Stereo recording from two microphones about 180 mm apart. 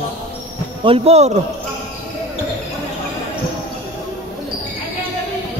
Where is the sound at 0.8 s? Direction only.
30° right (ahead or behind).